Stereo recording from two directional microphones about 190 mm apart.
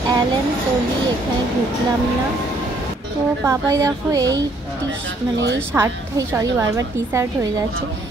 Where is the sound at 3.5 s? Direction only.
15° right (ahead or behind).